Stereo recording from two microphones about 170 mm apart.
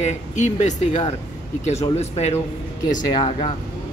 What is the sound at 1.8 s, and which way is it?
Speech, 40° left (ahead or behind).